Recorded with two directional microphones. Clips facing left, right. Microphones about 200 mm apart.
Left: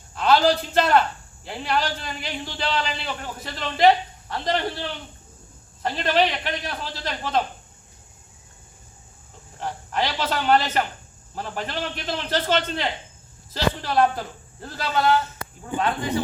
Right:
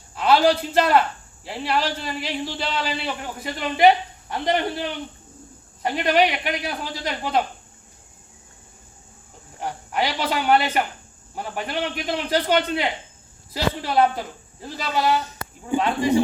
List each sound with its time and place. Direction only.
0.1 s a man's voice: 10° right (ahead or behind)
9.6 s a man's voice: 10° right (ahead or behind)